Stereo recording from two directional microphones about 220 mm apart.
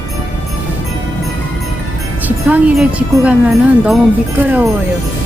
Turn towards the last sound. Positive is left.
turn(degrees=-5)  # may be behind; listen again after turning